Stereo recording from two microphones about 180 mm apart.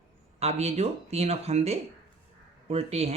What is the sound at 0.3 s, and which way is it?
Speech, 35° right (ahead or behind).